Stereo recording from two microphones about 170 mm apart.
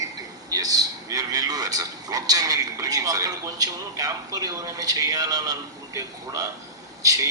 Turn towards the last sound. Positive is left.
turn(degrees=-20)  # may be behind; listen again after turning